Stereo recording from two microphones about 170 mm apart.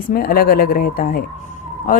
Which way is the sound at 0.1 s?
60° left (ahead or behind).